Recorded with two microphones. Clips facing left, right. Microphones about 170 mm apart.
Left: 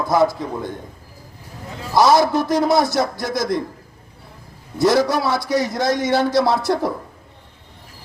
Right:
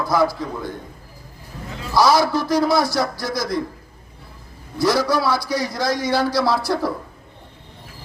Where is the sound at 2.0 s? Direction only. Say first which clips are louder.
Left 2 dB; 20° left (ahead or behind).